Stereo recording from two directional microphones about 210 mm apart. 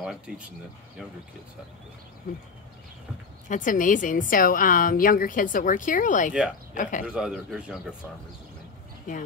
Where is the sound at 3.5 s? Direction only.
40° left (ahead or behind).